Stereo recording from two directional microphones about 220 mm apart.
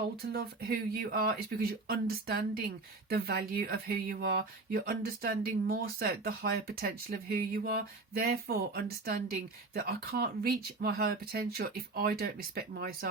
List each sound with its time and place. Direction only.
0.2 s speech: 45° right (ahead or behind)